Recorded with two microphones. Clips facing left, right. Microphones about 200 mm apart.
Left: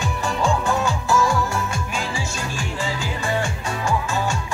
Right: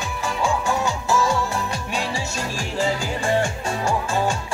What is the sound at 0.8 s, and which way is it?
Music, 25° right (ahead or behind).